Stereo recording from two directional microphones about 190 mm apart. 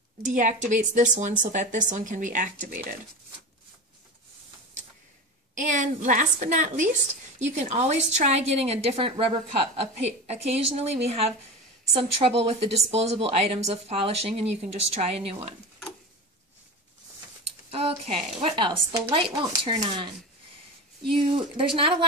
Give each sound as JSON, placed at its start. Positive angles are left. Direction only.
{"t": 0.2, "sound": "a woman's voice", "side_deg": -40}
{"t": 5.5, "sound": "a woman's voice", "side_deg": -40}
{"t": 17.6, "sound": "speech", "side_deg": -30}
{"t": 21.1, "sound": "speech", "side_deg": -25}